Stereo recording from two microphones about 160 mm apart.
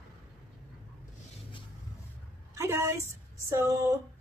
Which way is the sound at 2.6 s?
20° right (ahead or behind).